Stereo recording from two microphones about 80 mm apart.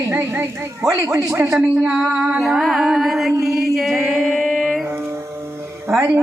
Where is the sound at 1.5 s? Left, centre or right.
Centre.